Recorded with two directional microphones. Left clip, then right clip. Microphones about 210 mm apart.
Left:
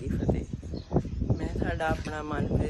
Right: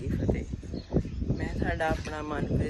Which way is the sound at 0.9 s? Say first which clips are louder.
Left 1 dB; 35° right (ahead or behind).